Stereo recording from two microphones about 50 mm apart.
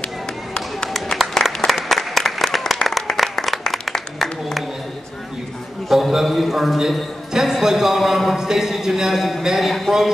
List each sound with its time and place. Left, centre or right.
1.3 s applause: centre
5.9 s a man's voice: centre